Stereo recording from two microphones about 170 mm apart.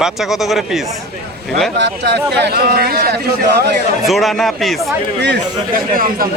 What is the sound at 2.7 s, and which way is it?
A man's voice, 60° right (ahead or behind).